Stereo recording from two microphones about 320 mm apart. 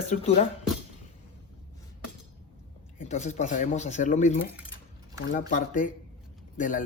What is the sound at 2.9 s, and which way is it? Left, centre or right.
Speech, left.